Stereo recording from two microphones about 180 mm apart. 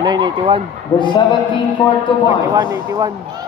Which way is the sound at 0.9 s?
25° left (ahead or behind).